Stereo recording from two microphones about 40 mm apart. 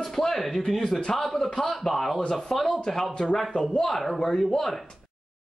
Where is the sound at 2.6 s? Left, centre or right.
Centre.